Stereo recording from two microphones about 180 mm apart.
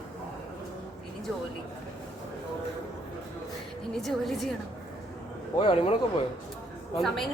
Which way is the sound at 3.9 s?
Centre (ahead or behind).